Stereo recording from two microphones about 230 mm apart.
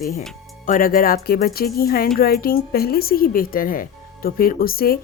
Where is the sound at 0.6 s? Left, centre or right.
Left.